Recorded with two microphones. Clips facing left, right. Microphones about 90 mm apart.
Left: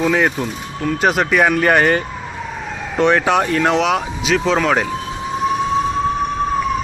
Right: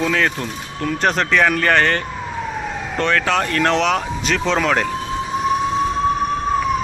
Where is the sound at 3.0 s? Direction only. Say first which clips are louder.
Left 4 dB; 15° left (ahead or behind).